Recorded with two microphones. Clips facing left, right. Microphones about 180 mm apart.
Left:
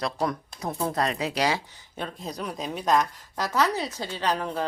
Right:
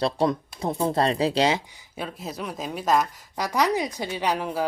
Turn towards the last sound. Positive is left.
turn(degrees=-10)  # may be behind; listen again after turning